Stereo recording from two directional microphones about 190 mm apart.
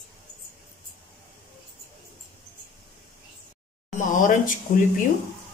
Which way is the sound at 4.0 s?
45° left (ahead or behind).